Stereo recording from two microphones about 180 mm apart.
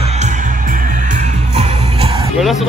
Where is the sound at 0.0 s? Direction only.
40° right (ahead or behind).